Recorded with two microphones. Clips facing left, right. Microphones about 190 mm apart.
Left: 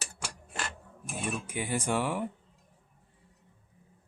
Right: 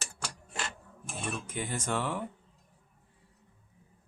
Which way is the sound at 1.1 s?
10° left (ahead or behind).